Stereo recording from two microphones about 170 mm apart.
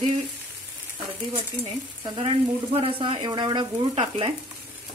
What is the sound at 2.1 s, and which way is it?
Speech, 35° right (ahead or behind).